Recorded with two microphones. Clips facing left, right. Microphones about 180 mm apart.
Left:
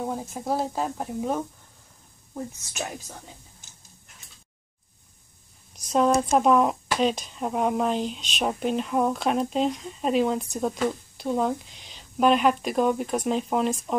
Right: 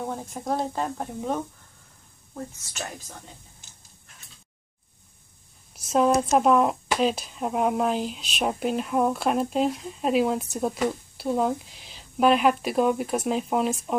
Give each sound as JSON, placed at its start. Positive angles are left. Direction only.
{"t": 0.0, "sound": "speech", "side_deg": 5}
{"t": 5.8, "sound": "speech", "side_deg": -5}